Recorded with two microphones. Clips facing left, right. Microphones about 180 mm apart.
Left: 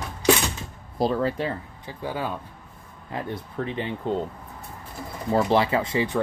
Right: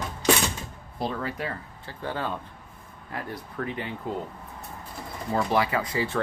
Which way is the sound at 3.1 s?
25° left (ahead or behind).